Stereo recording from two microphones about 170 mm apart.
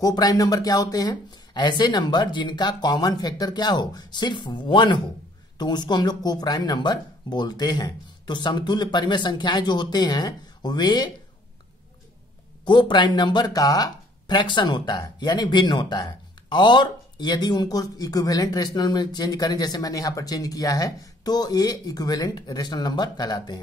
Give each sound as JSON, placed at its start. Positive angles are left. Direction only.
{"t": 0.0, "sound": "speech", "side_deg": 20}
{"t": 12.6, "sound": "speech", "side_deg": 25}